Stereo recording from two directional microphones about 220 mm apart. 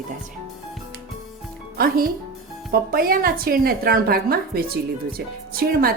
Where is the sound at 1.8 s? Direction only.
45° right (ahead or behind).